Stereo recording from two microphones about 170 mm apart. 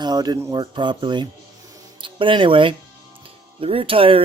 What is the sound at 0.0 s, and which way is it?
Speech, 25° right (ahead or behind).